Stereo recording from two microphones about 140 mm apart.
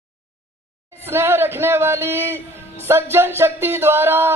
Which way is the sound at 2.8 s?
15° right (ahead or behind).